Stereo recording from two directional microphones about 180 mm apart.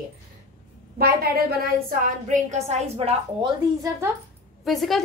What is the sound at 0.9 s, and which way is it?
A woman's voice, 55° right (ahead or behind).